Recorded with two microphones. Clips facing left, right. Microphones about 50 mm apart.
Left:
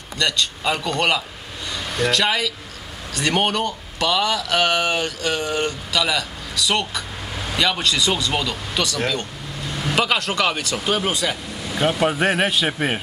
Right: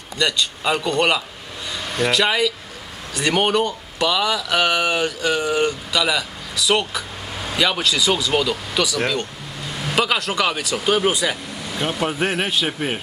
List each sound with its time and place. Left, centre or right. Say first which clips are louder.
0.2 s speech: right 1 dB; centre
11.7 s speech: left 4 dB; centre